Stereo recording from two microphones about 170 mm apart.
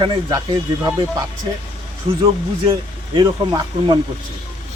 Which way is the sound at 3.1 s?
25° right (ahead or behind).